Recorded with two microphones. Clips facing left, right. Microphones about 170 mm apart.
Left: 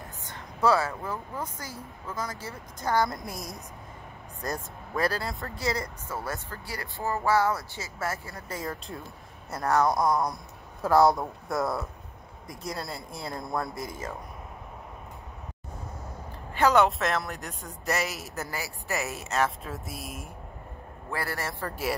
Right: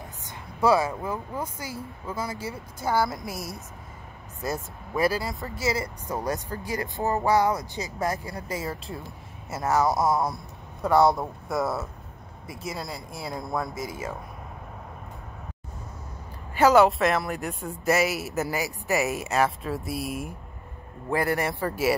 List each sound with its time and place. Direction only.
0.3 s a man's voice: 10° right (ahead or behind)
6.0 s a man's voice: 15° right (ahead or behind)
16.5 s speech: 5° right (ahead or behind)
21.1 s speech: 15° right (ahead or behind)